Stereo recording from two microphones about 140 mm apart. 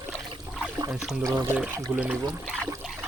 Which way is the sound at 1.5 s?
10° right (ahead or behind).